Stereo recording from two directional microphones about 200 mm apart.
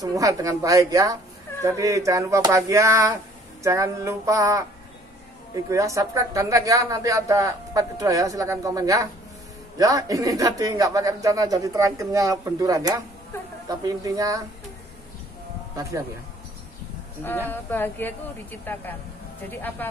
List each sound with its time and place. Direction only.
0.0 s speech: 15° right (ahead or behind)
15.7 s speech: 15° right (ahead or behind)
17.2 s speech: 10° left (ahead or behind)